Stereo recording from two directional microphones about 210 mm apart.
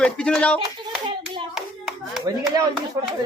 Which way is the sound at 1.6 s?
Centre (ahead or behind).